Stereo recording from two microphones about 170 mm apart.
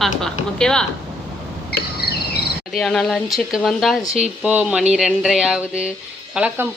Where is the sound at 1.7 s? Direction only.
70° left (ahead or behind).